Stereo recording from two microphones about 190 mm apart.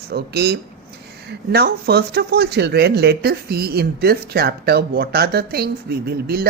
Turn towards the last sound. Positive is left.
turn(degrees=-55)  # may be behind; listen again after turning